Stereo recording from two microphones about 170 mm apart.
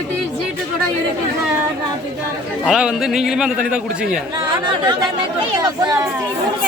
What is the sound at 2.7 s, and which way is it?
A man's voice, 5° right (ahead or behind).